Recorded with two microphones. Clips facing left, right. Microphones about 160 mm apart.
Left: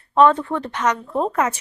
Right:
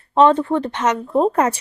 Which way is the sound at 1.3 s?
35° right (ahead or behind).